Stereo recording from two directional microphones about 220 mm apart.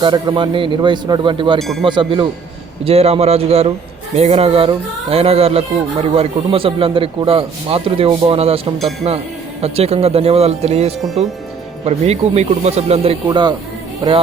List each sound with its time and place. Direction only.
0.0 s speech: 20° right (ahead or behind)
1.5 s speech: centre (ahead or behind)
1.8 s speech: 20° right (ahead or behind)